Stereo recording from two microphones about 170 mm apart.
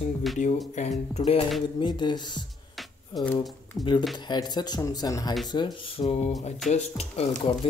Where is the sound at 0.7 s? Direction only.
40° left (ahead or behind).